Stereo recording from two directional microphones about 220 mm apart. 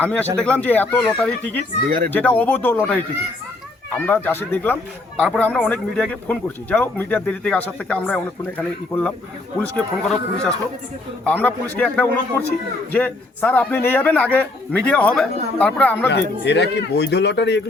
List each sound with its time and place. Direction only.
0.0 s speech: 5° left (ahead or behind)
16.0 s a man's voice: 50° left (ahead or behind)